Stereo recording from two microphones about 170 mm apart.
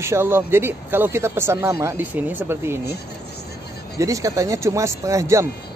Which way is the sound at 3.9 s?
20° right (ahead or behind).